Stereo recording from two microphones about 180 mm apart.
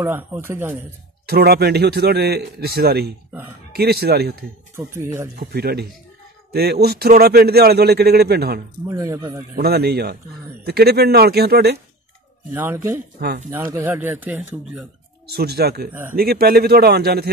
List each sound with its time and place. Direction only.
0.0 s speech: 15° right (ahead or behind)
1.2 s a man's voice: 60° right (ahead or behind)
4.7 s speech: 15° right (ahead or behind)
5.3 s a man's voice: 60° right (ahead or behind)
8.8 s speech: 20° right (ahead or behind)
9.6 s a man's voice: 60° right (ahead or behind)
12.5 s speech: 15° right (ahead or behind)
15.2 s a man's voice: 60° right (ahead or behind)
15.9 s speech: 10° right (ahead or behind)
16.2 s a man's voice: 60° right (ahead or behind)